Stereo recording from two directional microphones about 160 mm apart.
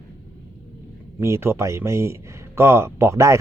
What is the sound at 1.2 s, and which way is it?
Speech, 15° right (ahead or behind).